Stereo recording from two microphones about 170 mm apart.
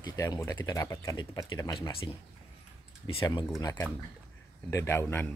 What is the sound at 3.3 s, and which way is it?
A man's voice, 20° left (ahead or behind).